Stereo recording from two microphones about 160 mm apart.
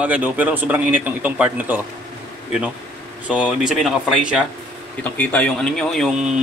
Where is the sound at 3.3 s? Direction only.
5° right (ahead or behind).